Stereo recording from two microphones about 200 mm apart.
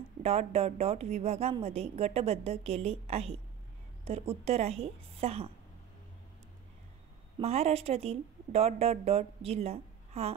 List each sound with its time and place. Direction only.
0.2 s a woman's voice: 30° right (ahead or behind)
7.3 s a woman's voice: 30° right (ahead or behind)